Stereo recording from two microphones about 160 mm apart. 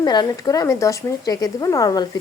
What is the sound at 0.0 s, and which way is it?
A woman's voice, 25° left (ahead or behind).